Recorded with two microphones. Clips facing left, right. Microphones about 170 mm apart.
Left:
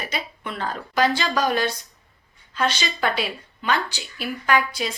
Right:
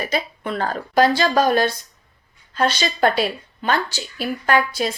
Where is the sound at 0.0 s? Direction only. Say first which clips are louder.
Right 7 dB; 40° right (ahead or behind).